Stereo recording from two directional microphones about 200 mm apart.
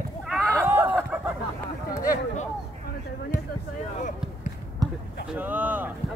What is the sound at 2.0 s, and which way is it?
Speech, 45° left (ahead or behind).